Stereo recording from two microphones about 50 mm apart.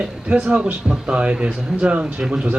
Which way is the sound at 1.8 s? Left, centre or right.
Right.